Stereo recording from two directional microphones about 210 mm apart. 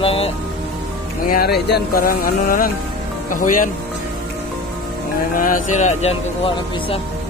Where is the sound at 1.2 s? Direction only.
45° left (ahead or behind).